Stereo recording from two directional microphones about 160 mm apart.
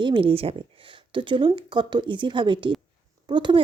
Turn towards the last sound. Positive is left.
turn(degrees=-30)  # may be behind; listen again after turning